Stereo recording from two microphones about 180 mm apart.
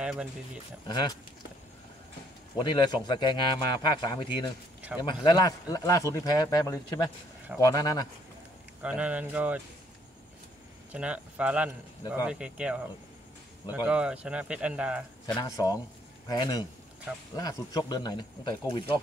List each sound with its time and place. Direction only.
0.0 s speech: 5° right (ahead or behind)
0.8 s a man's voice: 25° left (ahead or behind)
2.5 s a man's voice: 25° left (ahead or behind)
8.8 s a man's voice: 5° right (ahead or behind)
10.9 s a man's voice: 5° right (ahead or behind)
15.2 s a man's voice: 20° left (ahead or behind)